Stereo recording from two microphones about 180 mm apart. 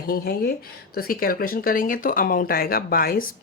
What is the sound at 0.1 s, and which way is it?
Speech, 55° left (ahead or behind).